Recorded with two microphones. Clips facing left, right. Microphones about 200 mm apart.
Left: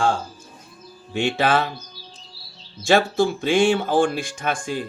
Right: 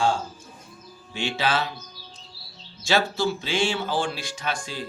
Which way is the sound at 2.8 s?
50° left (ahead or behind).